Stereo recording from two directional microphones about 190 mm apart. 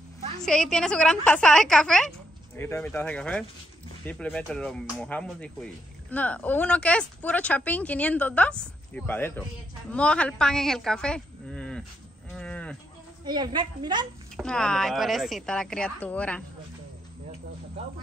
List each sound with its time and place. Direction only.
0.4 s a woman's voice: 5° left (ahead or behind)
12.4 s livestock: 5° left (ahead or behind)
13.2 s a woman's voice: 20° right (ahead or behind)
14.3 s a woman's voice: 5° left (ahead or behind)